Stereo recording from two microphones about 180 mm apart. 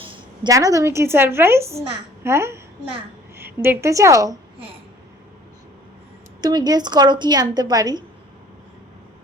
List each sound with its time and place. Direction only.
0.0 s a woman's voice: 25° right (ahead or behind)
6.4 s a woman's voice: 25° right (ahead or behind)